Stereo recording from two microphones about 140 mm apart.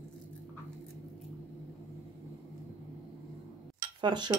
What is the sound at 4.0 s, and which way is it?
Speech, 30° right (ahead or behind).